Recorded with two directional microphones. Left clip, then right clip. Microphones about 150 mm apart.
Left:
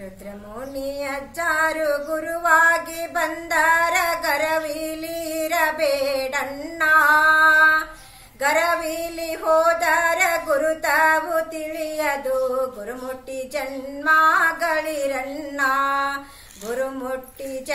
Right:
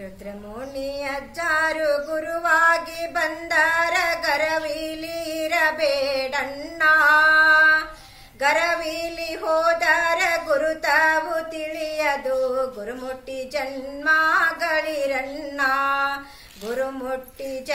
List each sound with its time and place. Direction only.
0.9 s female singing: 20° right (ahead or behind)
13.4 s music: 20° right (ahead or behind)